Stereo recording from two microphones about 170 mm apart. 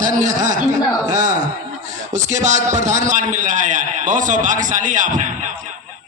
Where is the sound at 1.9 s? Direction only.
45° right (ahead or behind).